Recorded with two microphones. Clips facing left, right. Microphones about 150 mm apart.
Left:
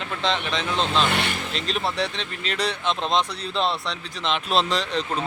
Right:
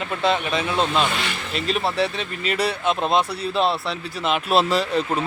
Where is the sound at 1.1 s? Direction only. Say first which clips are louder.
Left 2 dB; 60° left (ahead or behind).